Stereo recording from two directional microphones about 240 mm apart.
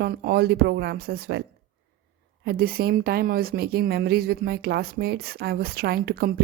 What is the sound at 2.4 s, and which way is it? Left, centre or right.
A woman's voice, right.